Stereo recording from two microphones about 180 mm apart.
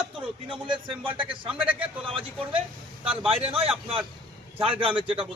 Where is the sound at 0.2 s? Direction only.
30° right (ahead or behind).